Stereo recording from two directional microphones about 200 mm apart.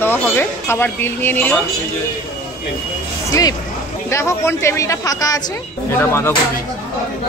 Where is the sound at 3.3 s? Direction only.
20° left (ahead or behind).